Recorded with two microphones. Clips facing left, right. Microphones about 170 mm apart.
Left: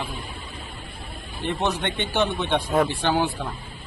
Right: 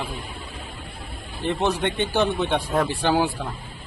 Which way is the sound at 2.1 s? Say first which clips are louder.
Even; 5° right (ahead or behind).